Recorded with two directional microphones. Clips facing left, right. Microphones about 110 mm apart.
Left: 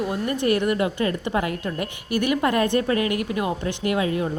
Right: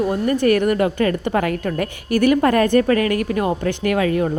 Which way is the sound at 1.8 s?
45° right (ahead or behind).